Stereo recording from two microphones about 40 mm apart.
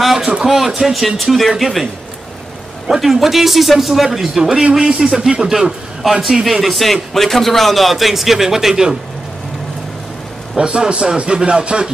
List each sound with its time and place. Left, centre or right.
0.2 s a man's voice: right
0.5 s a man's voice: centre
3.0 s a man's voice: centre
4.4 s a man's voice: centre
5.5 s a man's voice: centre
10.6 s a man's voice: right